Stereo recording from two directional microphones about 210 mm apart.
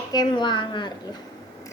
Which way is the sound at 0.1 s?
20° left (ahead or behind).